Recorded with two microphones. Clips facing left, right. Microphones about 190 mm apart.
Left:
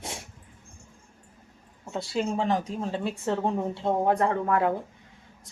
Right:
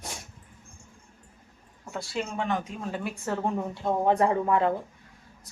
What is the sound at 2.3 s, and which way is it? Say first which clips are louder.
Speech: left 2 dB; 30° left (ahead or behind).